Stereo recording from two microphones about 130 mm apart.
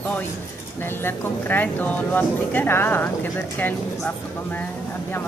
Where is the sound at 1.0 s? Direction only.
15° left (ahead or behind).